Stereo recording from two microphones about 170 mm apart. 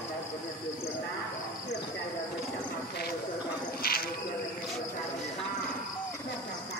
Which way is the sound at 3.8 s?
60° left (ahead or behind).